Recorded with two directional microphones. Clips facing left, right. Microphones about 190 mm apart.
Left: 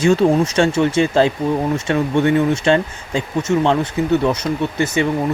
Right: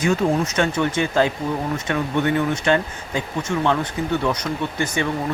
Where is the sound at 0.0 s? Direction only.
30° left (ahead or behind).